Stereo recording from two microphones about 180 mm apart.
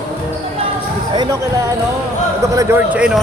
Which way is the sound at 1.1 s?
25° right (ahead or behind).